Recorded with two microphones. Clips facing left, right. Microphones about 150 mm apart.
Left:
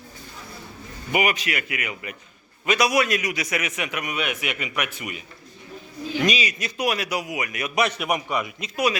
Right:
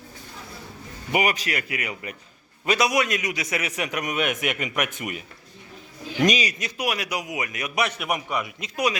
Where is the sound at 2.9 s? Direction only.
20° right (ahead or behind); by 6.5 s 40° right (ahead or behind).